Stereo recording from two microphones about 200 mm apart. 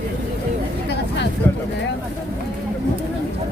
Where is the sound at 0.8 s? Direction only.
60° left (ahead or behind).